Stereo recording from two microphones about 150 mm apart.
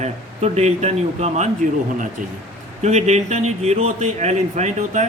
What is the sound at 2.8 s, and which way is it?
Speech, 50° right (ahead or behind).